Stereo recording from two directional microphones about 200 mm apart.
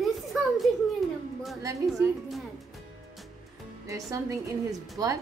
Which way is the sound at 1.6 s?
15° right (ahead or behind).